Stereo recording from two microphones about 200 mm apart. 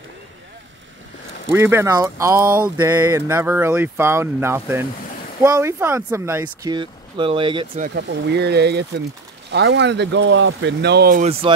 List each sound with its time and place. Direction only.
1.5 s speech: 10° right (ahead or behind)
7.7 s speech: 50° right (ahead or behind)